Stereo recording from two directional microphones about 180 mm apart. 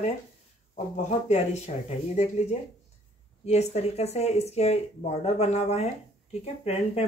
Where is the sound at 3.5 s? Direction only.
35° left (ahead or behind).